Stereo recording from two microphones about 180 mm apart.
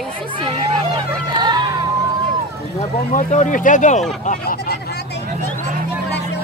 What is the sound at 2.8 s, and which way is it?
Speech, 40° left (ahead or behind).